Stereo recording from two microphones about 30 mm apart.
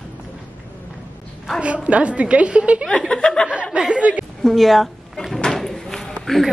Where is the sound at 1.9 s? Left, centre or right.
Right.